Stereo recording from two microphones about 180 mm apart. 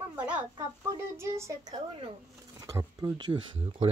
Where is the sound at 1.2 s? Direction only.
15° right (ahead or behind).